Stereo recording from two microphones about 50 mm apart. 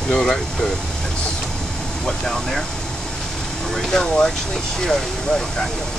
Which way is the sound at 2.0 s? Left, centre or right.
Centre.